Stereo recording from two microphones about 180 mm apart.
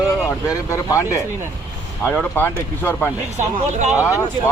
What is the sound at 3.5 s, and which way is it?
Speech, 40° right (ahead or behind).